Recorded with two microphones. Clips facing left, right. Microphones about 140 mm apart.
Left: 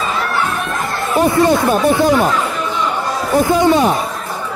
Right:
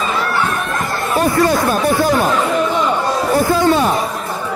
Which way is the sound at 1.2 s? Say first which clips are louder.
Left 2 dB; 20° left (ahead or behind).